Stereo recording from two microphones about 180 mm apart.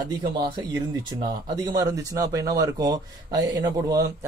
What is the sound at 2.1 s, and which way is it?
Speech, 20° right (ahead or behind).